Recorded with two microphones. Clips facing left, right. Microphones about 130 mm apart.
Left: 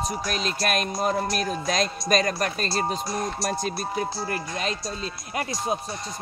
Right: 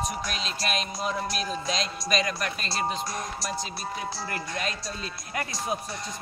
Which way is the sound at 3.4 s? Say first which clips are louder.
Left 6 dB; 50° left (ahead or behind).